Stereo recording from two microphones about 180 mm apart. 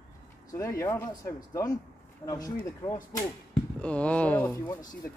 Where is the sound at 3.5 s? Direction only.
5° left (ahead or behind).